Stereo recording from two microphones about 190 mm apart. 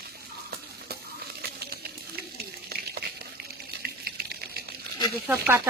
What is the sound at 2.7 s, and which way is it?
Water, 55° right (ahead or behind).